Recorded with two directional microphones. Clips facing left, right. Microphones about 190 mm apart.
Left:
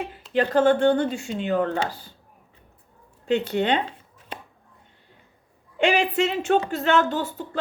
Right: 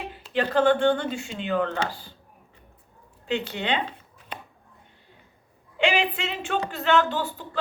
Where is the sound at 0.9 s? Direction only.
45° left (ahead or behind).